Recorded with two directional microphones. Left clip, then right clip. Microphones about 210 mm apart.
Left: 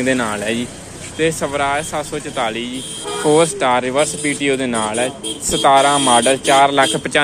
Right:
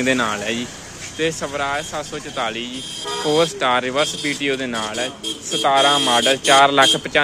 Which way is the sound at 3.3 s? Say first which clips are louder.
Left 4 dB; centre (ahead or behind).